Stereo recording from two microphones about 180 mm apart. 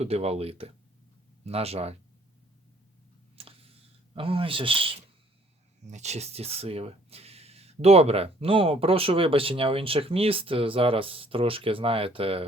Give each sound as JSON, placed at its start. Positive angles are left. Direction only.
{"t": 0.0, "sound": "speech", "side_deg": -35}
{"t": 3.4, "sound": "a sound", "side_deg": -35}
{"t": 4.1, "sound": "speech", "side_deg": -30}